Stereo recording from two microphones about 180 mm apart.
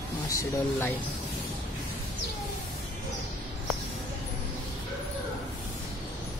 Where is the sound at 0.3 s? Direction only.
15° left (ahead or behind).